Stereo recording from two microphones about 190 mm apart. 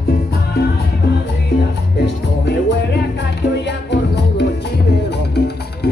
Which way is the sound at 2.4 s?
65° left (ahead or behind).